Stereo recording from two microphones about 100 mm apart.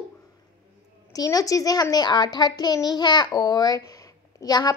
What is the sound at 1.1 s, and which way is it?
A woman's voice, 35° left (ahead or behind).